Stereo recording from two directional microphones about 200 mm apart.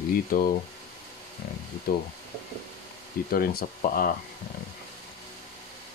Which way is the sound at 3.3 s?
45° left (ahead or behind).